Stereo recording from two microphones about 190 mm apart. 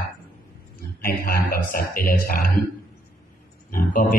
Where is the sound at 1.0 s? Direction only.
50° left (ahead or behind).